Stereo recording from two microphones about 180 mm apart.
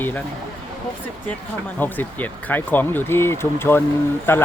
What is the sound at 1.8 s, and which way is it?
Speech, 10° left (ahead or behind).